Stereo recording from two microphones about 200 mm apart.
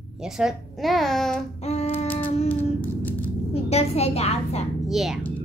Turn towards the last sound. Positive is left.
turn(degrees=0)  # may be behind; listen again after turning